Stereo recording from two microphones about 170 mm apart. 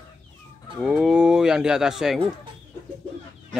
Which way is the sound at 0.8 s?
5° right (ahead or behind).